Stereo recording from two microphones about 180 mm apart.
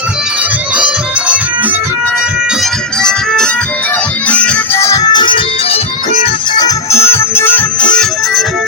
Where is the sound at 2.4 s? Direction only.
Centre (ahead or behind).